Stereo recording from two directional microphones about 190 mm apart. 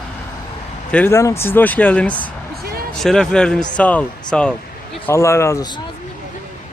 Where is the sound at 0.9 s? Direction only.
10° left (ahead or behind).